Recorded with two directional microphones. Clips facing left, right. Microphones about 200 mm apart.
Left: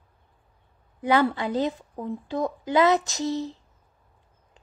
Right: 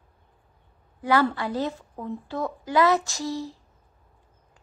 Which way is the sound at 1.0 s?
20° left (ahead or behind).